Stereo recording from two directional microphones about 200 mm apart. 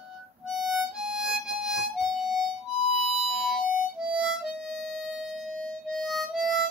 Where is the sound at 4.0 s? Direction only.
5° right (ahead or behind).